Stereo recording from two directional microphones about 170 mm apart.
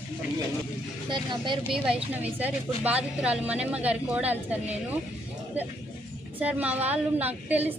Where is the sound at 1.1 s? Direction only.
30° right (ahead or behind).